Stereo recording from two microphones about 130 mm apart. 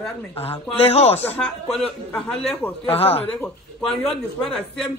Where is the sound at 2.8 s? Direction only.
50° left (ahead or behind).